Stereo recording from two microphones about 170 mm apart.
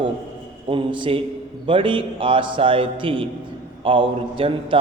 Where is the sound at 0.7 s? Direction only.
30° right (ahead or behind).